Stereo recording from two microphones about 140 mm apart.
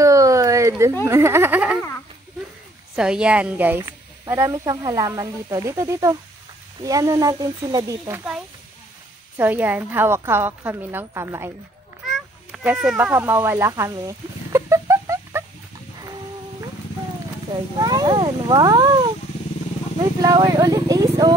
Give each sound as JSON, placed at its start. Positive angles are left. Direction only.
{"t": 0.0, "sound": "a sound", "side_deg": -25}
{"t": 1.0, "sound": "a woman's voice", "side_deg": -20}
{"t": 3.0, "sound": "a woman's voice", "side_deg": -5}
{"t": 9.4, "sound": "a woman's voice", "side_deg": -15}
{"t": 12.4, "sound": "speech", "side_deg": -5}
{"t": 17.7, "sound": "speech", "side_deg": -30}